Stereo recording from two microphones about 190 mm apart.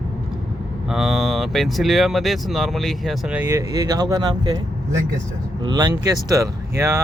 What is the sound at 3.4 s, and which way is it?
Speech, 20° right (ahead or behind).